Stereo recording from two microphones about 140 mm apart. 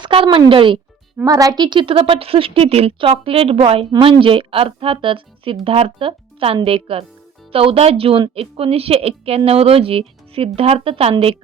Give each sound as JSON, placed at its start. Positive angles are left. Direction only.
{"t": 0.0, "sound": "speech", "side_deg": -40}
{"t": 1.2, "sound": "a woman's voice", "side_deg": -25}